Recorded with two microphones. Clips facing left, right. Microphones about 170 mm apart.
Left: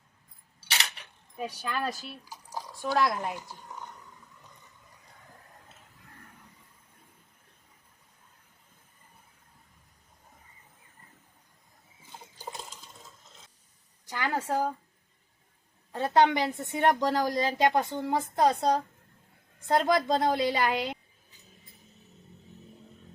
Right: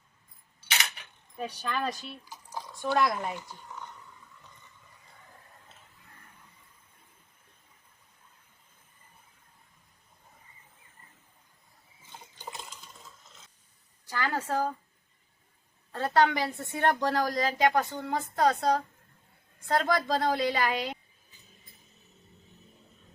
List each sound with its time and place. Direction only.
1.4 s speech: 10° left (ahead or behind)
14.1 s a sound: 15° left (ahead or behind)
15.9 s a woman's voice: 20° left (ahead or behind)